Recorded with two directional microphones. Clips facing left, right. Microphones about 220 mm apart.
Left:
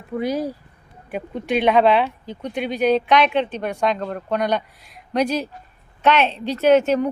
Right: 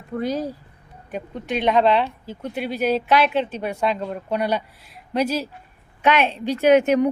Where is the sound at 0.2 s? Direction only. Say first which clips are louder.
Left 2 dB; 10° left (ahead or behind).